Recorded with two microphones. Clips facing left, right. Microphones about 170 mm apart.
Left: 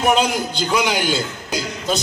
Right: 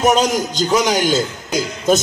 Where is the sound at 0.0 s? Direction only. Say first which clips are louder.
Right 3 dB; 40° right (ahead or behind).